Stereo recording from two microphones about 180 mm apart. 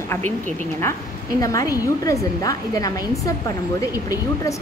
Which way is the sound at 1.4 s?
20° left (ahead or behind).